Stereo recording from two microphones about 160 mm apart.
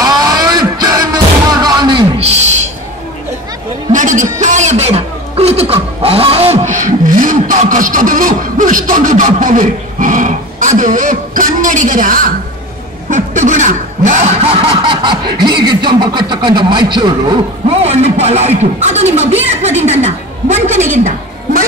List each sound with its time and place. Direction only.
0.0 s music: 25° right (ahead or behind); by 2.7 s 45° right (ahead or behind)
3.9 s chuckle: 50° right (ahead or behind)
13.1 s snicker: 50° right (ahead or behind); by 15.5 s 30° right (ahead or behind)
15.8 s speech: 30° right (ahead or behind)
17.8 s speech: 40° right (ahead or behind)